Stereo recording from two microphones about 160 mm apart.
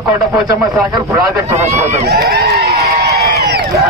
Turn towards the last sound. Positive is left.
turn(degrees=-80)